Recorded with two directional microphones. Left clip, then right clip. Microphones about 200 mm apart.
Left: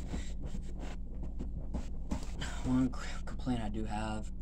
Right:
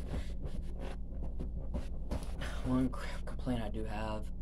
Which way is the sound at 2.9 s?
5° right (ahead or behind).